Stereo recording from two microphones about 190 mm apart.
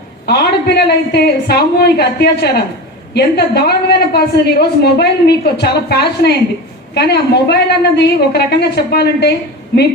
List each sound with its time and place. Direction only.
0.3 s a woman's voice: 60° left (ahead or behind)